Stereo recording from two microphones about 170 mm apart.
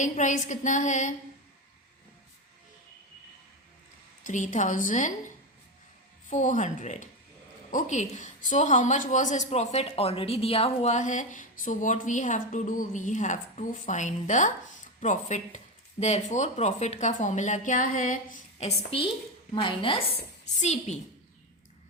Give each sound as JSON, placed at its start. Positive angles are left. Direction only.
{"t": 0.0, "sound": "a woman's voice", "side_deg": 45}
{"t": 4.2, "sound": "a woman's voice", "side_deg": 45}
{"t": 6.3, "sound": "a woman's voice", "side_deg": 45}
{"t": 19.5, "sound": "a woman's voice", "side_deg": 30}
{"t": 20.6, "sound": "a woman's voice", "side_deg": 40}